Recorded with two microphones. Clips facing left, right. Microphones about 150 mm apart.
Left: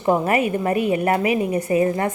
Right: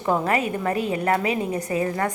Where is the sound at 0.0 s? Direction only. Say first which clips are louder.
Left 4 dB; 20° left (ahead or behind).